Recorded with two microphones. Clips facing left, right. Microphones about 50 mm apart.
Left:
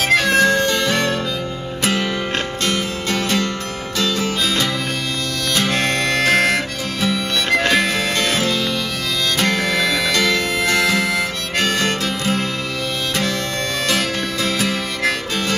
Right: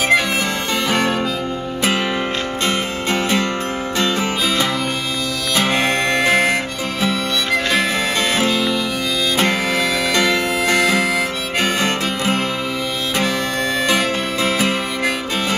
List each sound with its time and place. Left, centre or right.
0.1 s harmonica: centre
1.8 s music: centre
5.6 s harmonica: centre
13.8 s music: centre